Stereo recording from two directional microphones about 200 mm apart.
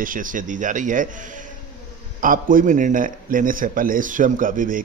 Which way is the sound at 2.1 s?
45° right (ahead or behind).